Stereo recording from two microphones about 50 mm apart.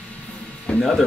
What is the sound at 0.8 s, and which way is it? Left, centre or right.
Speech, centre.